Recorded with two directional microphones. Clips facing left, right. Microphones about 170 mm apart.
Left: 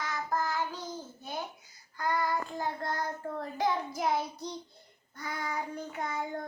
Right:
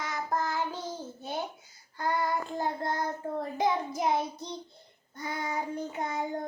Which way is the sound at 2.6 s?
20° right (ahead or behind).